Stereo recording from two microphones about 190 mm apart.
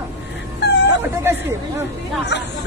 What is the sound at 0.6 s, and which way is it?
Dog, 65° left (ahead or behind).